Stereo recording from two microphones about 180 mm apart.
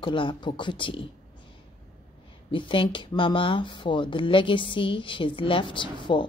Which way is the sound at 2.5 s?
30° left (ahead or behind).